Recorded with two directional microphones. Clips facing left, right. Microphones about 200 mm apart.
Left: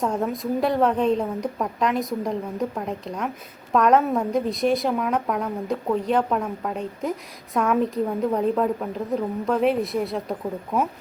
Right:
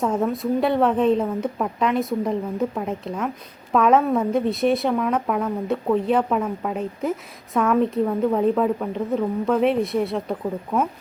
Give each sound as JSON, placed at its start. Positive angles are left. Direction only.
{"t": 0.0, "sound": "a woman's voice", "side_deg": 0}